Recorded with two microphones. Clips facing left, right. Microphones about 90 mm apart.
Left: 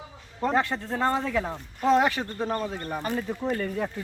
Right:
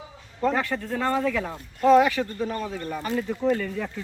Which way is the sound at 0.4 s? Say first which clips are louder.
Right 1 dB; 25° left (ahead or behind).